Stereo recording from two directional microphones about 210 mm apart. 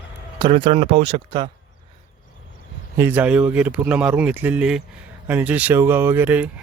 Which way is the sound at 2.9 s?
10° right (ahead or behind).